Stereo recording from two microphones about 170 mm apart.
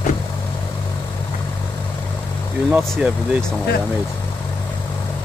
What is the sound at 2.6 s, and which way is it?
Speech, 10° right (ahead or behind).